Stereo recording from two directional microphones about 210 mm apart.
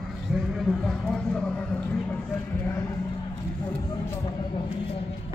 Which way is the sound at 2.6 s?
10° left (ahead or behind).